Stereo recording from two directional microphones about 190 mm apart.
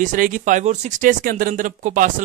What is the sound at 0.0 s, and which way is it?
Speech, 45° right (ahead or behind).